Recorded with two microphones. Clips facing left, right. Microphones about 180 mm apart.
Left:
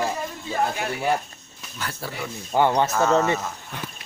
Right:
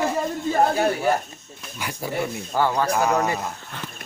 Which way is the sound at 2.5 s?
20° left (ahead or behind).